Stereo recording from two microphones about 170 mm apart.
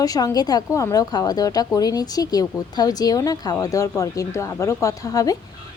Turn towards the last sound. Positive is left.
turn(degrees=20)  # may be behind; listen again after turning